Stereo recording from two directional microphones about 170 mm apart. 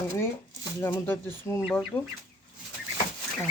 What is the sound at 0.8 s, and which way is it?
Speech, 15° left (ahead or behind).